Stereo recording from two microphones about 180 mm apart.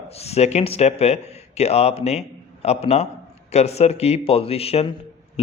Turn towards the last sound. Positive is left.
turn(degrees=35)  # may be behind; listen again after turning